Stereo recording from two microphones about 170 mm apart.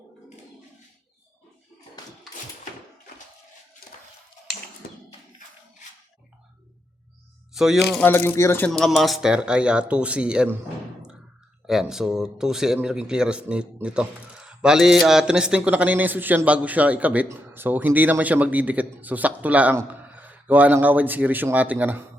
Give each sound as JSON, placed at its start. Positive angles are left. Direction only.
{"t": 7.5, "sound": "speech", "side_deg": 0}
{"t": 8.0, "sound": "speech", "side_deg": 15}
{"t": 11.6, "sound": "speech", "side_deg": 0}